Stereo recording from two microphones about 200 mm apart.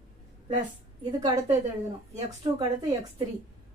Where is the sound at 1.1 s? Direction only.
20° right (ahead or behind).